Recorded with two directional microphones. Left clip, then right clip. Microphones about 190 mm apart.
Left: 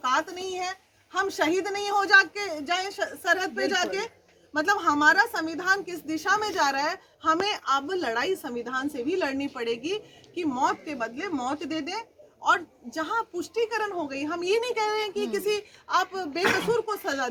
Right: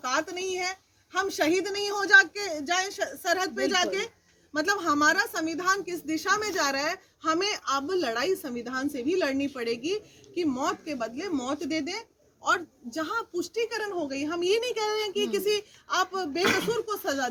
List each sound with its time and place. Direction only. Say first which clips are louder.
0.0 s a woman's voice: left 3 dB; 20° right (ahead or behind)